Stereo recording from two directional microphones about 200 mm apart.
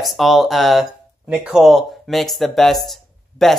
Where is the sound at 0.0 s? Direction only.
Centre (ahead or behind).